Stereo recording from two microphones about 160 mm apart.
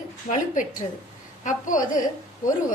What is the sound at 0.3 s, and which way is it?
A woman's voice, 55° left (ahead or behind).